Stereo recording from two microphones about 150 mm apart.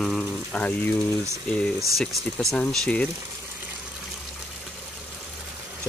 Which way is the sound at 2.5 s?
5° left (ahead or behind).